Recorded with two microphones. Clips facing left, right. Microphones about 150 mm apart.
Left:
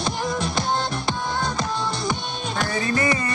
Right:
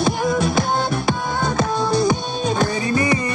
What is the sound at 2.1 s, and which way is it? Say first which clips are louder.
Music: right 7 dB; 40° right (ahead or behind).